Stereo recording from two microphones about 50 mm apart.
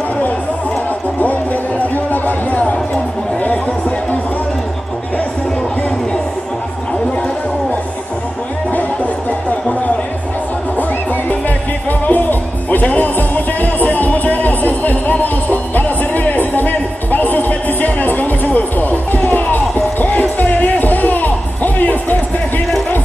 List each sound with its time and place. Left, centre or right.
1.2 s music: left
12.1 s music: left